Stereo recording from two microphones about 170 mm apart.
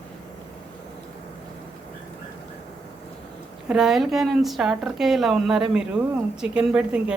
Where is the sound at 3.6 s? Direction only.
5° right (ahead or behind).